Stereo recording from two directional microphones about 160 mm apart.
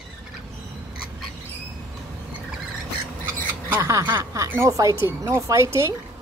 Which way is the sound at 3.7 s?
15° right (ahead or behind).